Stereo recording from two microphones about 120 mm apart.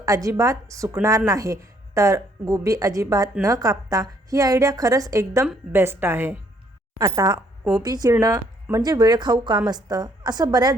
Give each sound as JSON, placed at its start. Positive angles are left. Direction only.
{"t": 0.0, "sound": "a woman's voice", "side_deg": -30}
{"t": 7.0, "sound": "a woman's voice", "side_deg": -35}